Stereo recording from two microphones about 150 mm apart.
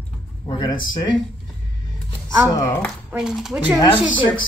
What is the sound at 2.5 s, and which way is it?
Speech, 20° left (ahead or behind).